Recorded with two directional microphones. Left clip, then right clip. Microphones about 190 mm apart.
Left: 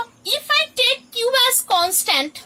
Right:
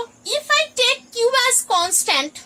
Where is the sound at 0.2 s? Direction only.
Centre (ahead or behind).